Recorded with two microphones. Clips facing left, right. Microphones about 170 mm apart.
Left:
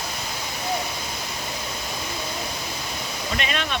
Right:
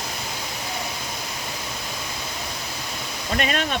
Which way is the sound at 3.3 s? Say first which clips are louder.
Right 4 dB; 45° right (ahead or behind).